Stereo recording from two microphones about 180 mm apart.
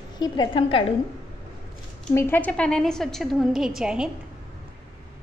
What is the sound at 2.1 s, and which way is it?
A woman's voice, 10° left (ahead or behind).